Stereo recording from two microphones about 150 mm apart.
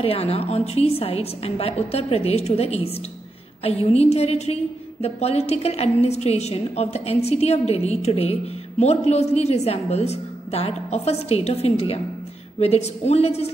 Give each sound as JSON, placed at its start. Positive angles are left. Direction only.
{"t": 0.0, "sound": "a woman's voice", "side_deg": 40}